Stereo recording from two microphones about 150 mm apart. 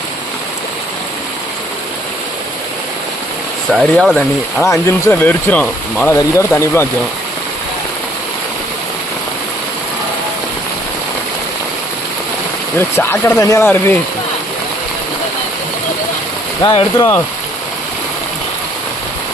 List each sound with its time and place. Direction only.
3.7 s speech: 5° right (ahead or behind)
4.6 s speech: 20° left (ahead or behind)
6.1 s speech: 20° left (ahead or behind)
12.7 s speech: 15° left (ahead or behind)
16.6 s speech: 35° left (ahead or behind)